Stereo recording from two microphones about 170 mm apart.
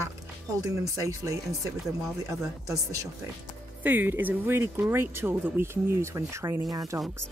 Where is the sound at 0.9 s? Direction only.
20° right (ahead or behind).